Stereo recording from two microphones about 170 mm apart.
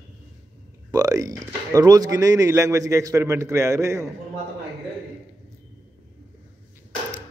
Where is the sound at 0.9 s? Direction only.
20° right (ahead or behind).